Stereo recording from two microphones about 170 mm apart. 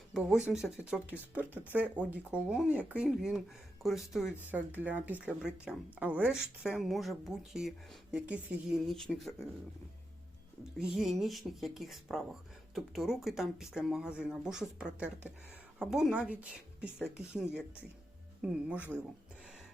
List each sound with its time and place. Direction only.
0.1 s speech: 5° right (ahead or behind)
10.8 s speech: 5° right (ahead or behind)